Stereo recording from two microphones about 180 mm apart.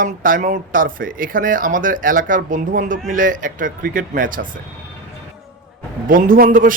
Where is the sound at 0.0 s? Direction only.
50° right (ahead or behind).